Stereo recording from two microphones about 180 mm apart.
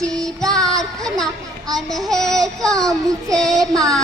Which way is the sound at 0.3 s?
Centre (ahead or behind).